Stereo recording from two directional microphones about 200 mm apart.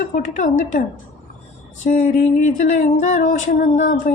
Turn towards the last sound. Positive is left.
turn(degrees=40)  # may be behind; listen again after turning